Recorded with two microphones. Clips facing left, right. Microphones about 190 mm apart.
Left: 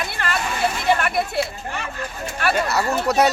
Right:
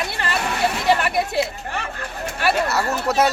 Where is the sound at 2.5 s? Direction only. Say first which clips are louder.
Left 2 dB; centre (ahead or behind).